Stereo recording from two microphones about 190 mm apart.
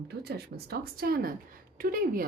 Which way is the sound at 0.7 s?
50° right (ahead or behind).